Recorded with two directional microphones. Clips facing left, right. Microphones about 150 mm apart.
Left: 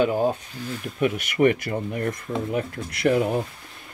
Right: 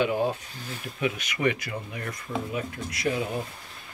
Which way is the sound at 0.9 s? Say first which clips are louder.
Left 7 dB; 50° left (ahead or behind).